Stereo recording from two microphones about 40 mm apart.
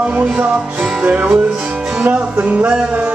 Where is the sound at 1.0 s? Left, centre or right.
Right.